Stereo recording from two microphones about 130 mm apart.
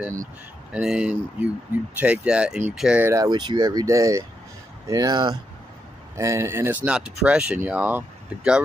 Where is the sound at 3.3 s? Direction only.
35° right (ahead or behind).